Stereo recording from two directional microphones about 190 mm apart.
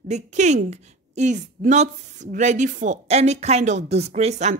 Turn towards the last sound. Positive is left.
turn(degrees=-35)  # may be behind; listen again after turning